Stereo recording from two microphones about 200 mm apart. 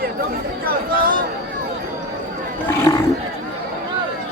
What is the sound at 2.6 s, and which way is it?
Roaring cats, 15° left (ahead or behind).